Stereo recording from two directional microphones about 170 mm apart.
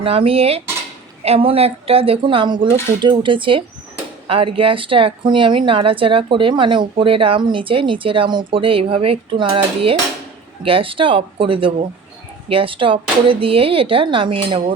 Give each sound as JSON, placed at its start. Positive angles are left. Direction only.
{"t": 0.0, "sound": "a woman's voice", "side_deg": -35}